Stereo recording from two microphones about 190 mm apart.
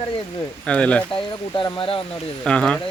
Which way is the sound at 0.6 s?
5° left (ahead or behind).